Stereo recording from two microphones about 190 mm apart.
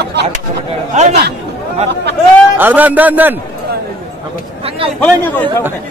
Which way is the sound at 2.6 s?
10° right (ahead or behind).